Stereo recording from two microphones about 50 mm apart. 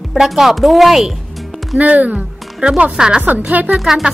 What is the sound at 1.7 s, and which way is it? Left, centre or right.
A woman's voice, right.